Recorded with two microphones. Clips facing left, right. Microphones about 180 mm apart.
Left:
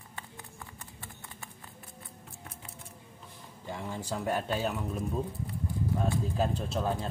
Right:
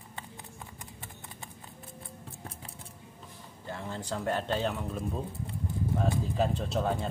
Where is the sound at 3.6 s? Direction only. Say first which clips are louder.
Even; 15° left (ahead or behind).